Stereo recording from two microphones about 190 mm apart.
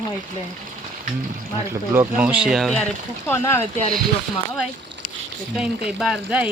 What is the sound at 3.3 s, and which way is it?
Speech, 15° left (ahead or behind).